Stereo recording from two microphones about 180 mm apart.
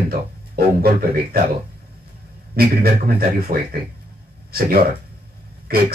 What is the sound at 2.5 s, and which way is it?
Speech, 60° right (ahead or behind).